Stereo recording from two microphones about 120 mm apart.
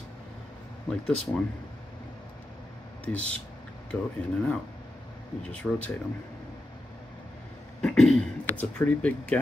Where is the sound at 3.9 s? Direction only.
5° left (ahead or behind).